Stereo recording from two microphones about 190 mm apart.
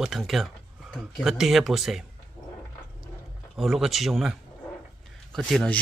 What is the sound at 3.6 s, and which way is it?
Speech, centre (ahead or behind).